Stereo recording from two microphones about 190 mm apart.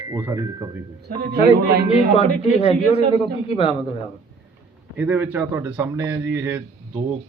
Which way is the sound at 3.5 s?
30° left (ahead or behind).